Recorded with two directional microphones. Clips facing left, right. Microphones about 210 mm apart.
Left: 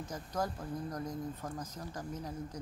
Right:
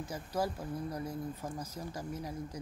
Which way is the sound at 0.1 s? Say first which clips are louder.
Right 2 dB; 10° right (ahead or behind).